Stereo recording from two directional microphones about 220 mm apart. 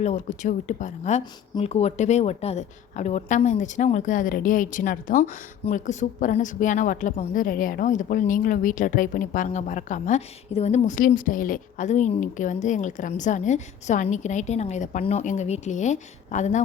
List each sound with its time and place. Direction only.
0.0 s speech: 35° left (ahead or behind)